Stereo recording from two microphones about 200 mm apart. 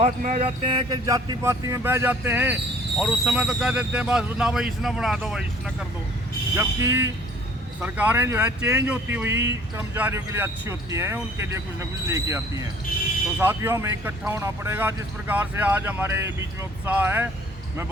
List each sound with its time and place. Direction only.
0.0 s speech: 35° right (ahead or behind); by 5.7 s 5° right (ahead or behind)
6.6 s speech: 15° right (ahead or behind)